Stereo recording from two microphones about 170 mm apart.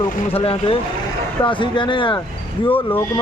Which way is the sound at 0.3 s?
35° left (ahead or behind).